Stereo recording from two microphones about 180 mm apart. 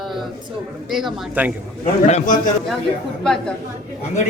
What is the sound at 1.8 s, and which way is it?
Speech, 40° left (ahead or behind).